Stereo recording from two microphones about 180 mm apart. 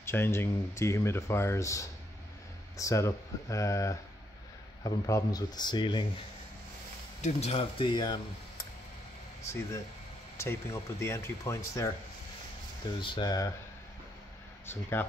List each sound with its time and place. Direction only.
0.0 s speech: 15° left (ahead or behind)
7.2 s speech: 40° left (ahead or behind)
9.4 s speech: 15° left (ahead or behind)
13.0 s speech: 25° left (ahead or behind)
14.7 s speech: 10° left (ahead or behind)